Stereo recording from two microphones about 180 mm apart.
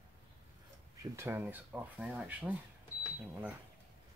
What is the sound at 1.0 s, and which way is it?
Speech, 15° right (ahead or behind).